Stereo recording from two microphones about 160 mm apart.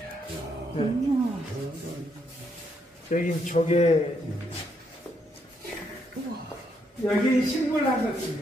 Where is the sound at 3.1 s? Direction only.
55° left (ahead or behind).